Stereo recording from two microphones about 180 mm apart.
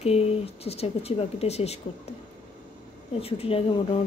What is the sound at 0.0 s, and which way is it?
Speech, 35° left (ahead or behind).